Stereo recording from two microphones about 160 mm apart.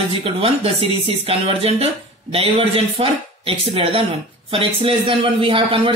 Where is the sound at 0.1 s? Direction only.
40° right (ahead or behind).